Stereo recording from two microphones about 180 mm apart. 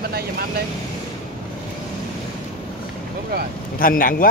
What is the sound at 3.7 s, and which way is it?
Speech, 50° left (ahead or behind).